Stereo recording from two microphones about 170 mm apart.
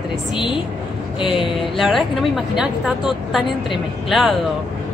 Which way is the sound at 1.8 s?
Centre (ahead or behind).